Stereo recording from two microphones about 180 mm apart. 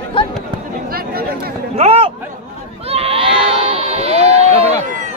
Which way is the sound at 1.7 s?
35° right (ahead or behind).